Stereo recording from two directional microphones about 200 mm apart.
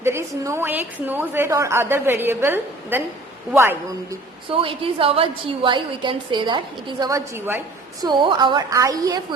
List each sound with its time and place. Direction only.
0.0 s a woman's voice: 15° right (ahead or behind)
4.5 s a woman's voice: 25° right (ahead or behind); by 7.6 s 10° right (ahead or behind)
8.0 s a woman's voice: 25° right (ahead or behind)